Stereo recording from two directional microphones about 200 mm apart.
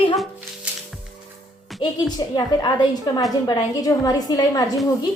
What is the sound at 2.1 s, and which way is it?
A woman's voice, 20° left (ahead or behind).